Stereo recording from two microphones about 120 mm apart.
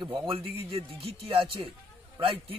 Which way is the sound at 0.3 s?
50° right (ahead or behind).